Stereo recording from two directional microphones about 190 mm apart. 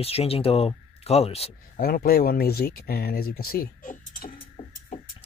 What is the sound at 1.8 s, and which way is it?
Speech, 50° left (ahead or behind).